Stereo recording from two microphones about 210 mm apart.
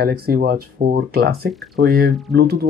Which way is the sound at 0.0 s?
45° right (ahead or behind).